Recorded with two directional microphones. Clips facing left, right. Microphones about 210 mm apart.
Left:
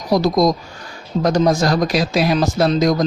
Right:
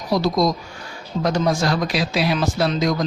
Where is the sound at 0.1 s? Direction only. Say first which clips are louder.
Left 4 dB; 45° left (ahead or behind).